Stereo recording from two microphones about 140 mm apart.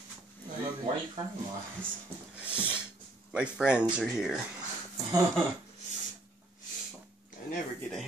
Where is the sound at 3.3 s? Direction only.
5° right (ahead or behind).